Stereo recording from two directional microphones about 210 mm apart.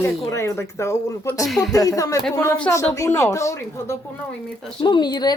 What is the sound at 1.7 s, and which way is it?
A woman's voice, 15° left (ahead or behind).